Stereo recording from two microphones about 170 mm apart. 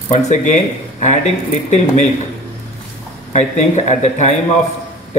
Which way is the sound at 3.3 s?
45° left (ahead or behind).